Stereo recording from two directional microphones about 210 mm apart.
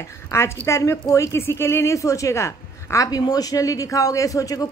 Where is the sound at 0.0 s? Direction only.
10° left (ahead or behind).